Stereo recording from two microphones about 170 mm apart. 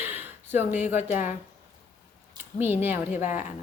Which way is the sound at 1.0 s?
45° left (ahead or behind).